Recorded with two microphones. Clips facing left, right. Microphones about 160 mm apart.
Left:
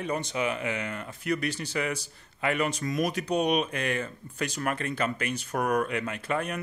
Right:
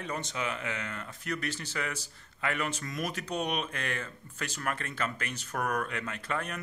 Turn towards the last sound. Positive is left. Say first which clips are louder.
# left 5 dB
turn(degrees=15)  # may be behind; listen again after turning